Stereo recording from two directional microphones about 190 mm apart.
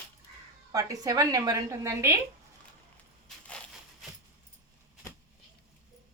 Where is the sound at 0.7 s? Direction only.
20° right (ahead or behind).